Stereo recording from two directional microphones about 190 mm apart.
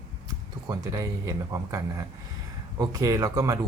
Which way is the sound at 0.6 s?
15° right (ahead or behind).